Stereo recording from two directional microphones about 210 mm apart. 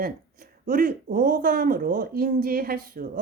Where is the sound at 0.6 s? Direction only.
40° right (ahead or behind).